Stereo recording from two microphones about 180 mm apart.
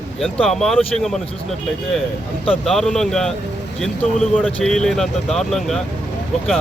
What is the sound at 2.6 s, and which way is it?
Speech, centre (ahead or behind).